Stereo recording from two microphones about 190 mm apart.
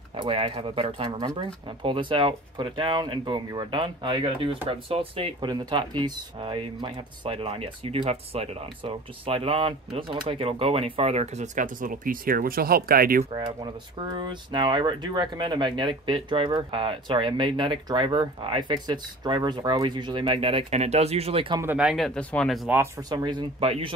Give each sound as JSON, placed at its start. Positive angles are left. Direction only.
{"t": 0.1, "sound": "speech", "side_deg": -30}
{"t": 13.3, "sound": "speech", "side_deg": -25}
{"t": 21.5, "sound": "speech", "side_deg": -10}
{"t": 22.7, "sound": "speech", "side_deg": -15}